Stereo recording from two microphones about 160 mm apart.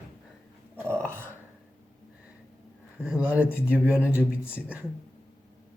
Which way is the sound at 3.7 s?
10° right (ahead or behind).